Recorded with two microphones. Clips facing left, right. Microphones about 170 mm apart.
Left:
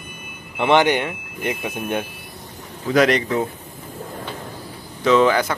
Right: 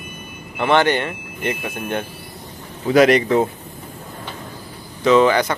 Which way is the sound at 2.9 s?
5° right (ahead or behind).